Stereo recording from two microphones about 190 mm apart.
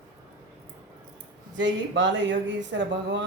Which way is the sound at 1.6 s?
70° right (ahead or behind).